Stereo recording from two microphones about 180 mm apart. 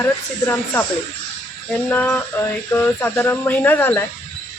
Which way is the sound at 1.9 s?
10° left (ahead or behind).